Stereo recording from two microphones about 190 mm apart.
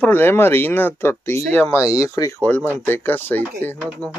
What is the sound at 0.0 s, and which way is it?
Speech, 10° left (ahead or behind).